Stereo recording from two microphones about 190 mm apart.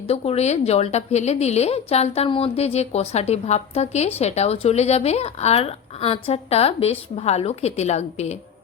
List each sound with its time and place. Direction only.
0.1 s a woman's voice: 35° left (ahead or behind)